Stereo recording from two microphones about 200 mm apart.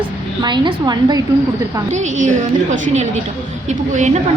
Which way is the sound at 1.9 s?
35° right (ahead or behind).